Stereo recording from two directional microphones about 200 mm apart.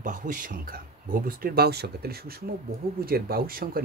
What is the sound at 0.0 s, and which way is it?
Speech, 40° right (ahead or behind).